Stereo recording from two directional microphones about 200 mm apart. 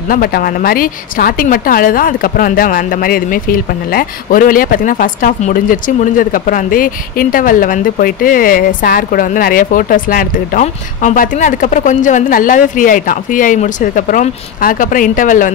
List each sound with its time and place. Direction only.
0.1 s a woman's voice: 45° left (ahead or behind)